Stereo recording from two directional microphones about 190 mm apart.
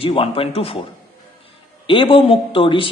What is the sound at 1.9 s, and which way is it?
A man's voice, 25° left (ahead or behind).